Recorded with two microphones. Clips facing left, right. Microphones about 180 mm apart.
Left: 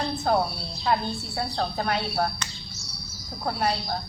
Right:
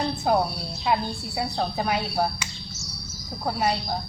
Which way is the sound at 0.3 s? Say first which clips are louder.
Right 1 dB; 10° right (ahead or behind).